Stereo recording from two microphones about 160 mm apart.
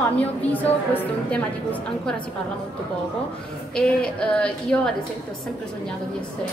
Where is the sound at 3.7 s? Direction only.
5° left (ahead or behind).